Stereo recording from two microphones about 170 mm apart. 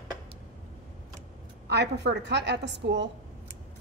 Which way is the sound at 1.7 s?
90° right.